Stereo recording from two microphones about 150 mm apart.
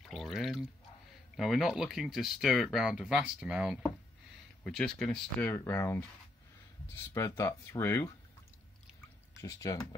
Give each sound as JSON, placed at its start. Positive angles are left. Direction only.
{"t": 0.0, "sound": "pour", "side_deg": 0}
{"t": 1.3, "sound": "speech", "side_deg": 0}
{"t": 4.6, "sound": "speech", "side_deg": 5}
{"t": 7.2, "sound": "speech", "side_deg": 20}
{"t": 9.4, "sound": "speech", "side_deg": 25}